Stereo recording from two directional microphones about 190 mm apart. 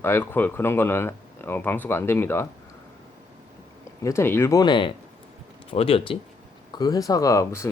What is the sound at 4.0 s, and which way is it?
Speech, 15° left (ahead or behind).